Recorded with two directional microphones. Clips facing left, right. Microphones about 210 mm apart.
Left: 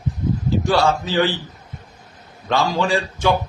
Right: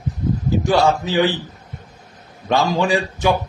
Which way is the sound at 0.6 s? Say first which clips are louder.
Right 2 dB; 15° right (ahead or behind).